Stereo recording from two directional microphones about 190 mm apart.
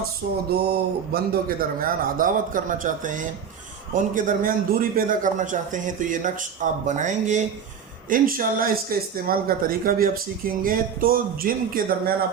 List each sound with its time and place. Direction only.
0.2 s speech: 50° right (ahead or behind)